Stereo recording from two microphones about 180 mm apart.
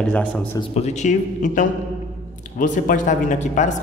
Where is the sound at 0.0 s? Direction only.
5° left (ahead or behind).